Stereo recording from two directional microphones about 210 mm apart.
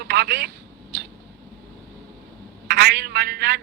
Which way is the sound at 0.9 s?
45° right (ahead or behind).